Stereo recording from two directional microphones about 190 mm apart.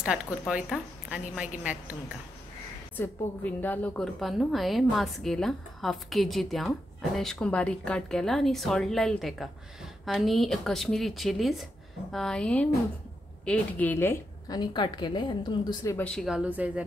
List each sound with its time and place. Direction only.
0.0 s a woman's voice: 5° right (ahead or behind)
3.0 s a woman's voice: 10° left (ahead or behind)
16.0 s a woman's voice: 5° left (ahead or behind)